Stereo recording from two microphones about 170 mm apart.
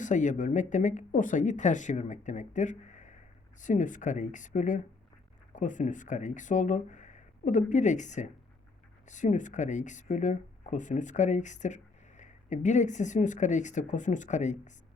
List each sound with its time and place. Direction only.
0.0 s speech: 45° left (ahead or behind)